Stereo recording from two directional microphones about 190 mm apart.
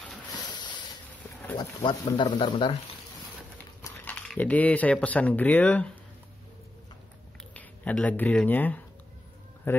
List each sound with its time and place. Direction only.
1.6 s speech: 20° left (ahead or behind)
3.8 s speech: 10° left (ahead or behind)
7.5 s speech: 5° left (ahead or behind)